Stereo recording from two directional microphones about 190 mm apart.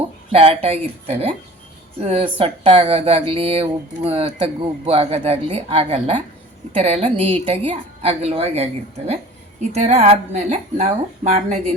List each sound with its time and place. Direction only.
0.3 s speech: 30° right (ahead or behind)